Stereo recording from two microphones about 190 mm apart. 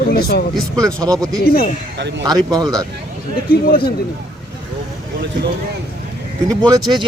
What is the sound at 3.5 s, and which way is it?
Speech, 50° left (ahead or behind).